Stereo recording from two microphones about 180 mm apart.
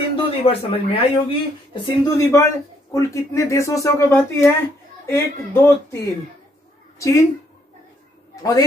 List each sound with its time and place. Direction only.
0.4 s speech: 35° left (ahead or behind); by 5.9 s 15° left (ahead or behind)
7.0 s a woman's voice: 15° left (ahead or behind)
8.4 s a man's voice: 20° left (ahead or behind)